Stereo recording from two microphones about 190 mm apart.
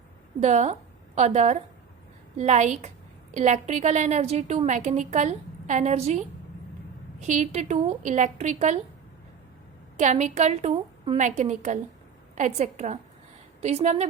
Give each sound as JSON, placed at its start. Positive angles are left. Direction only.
{"t": 0.4, "sound": "a woman's voice", "side_deg": -40}
{"t": 10.0, "sound": "a woman's voice", "side_deg": -40}